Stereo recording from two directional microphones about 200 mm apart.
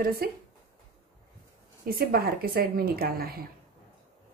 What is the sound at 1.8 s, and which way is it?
A woman's voice, 50° right (ahead or behind).